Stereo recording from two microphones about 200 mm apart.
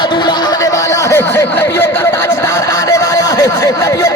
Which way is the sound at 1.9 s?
15° left (ahead or behind).